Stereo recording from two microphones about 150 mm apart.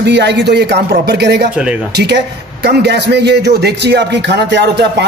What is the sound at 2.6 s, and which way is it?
A man's voice, 90° right.